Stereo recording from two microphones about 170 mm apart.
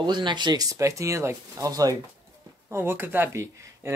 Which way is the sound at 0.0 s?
25° right (ahead or behind).